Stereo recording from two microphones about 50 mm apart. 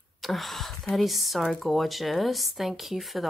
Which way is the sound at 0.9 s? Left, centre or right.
Centre.